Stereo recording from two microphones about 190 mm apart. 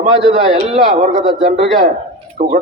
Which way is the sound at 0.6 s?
35° right (ahead or behind).